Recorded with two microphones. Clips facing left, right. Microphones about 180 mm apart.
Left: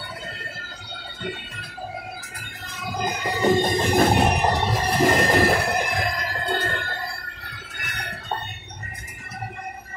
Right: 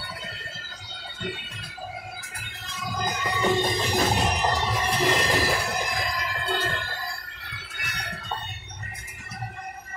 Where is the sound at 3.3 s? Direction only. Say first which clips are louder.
Left 5 dB; 45° left (ahead or behind).